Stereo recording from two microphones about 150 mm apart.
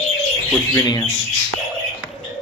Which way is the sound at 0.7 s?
25° left (ahead or behind).